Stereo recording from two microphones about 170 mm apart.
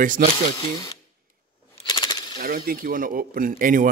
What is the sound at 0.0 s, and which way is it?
Speech, 50° right (ahead or behind).